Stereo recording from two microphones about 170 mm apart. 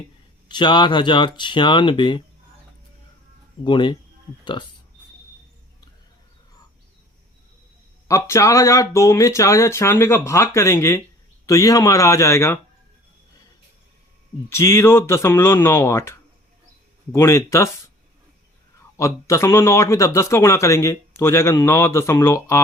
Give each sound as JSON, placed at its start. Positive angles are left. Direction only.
{"t": 0.4, "sound": "speech", "side_deg": 25}
{"t": 3.6, "sound": "speech", "side_deg": 30}
{"t": 8.0, "sound": "speech", "side_deg": 20}
{"t": 14.5, "sound": "speech", "side_deg": 15}
{"t": 18.9, "sound": "speech", "side_deg": 15}